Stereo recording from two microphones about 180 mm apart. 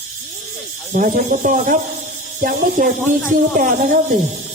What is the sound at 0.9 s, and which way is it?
Speech, 45° right (ahead or behind).